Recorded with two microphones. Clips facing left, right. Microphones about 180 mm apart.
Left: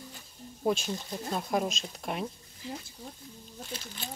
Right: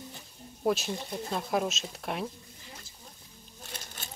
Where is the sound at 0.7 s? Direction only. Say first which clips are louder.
Right 1 dB; centre (ahead or behind).